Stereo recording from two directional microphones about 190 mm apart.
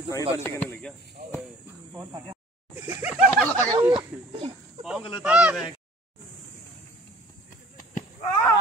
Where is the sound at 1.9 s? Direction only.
20° right (ahead or behind).